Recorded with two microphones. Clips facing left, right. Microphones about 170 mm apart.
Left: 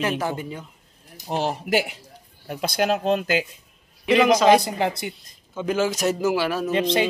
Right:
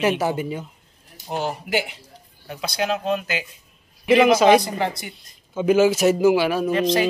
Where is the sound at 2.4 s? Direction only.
50° left (ahead or behind).